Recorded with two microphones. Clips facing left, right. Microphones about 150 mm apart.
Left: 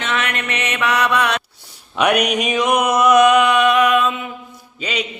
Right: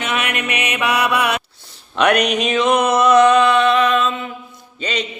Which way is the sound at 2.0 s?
10° left (ahead or behind).